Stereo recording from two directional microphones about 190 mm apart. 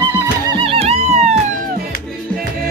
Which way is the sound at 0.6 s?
30° right (ahead or behind).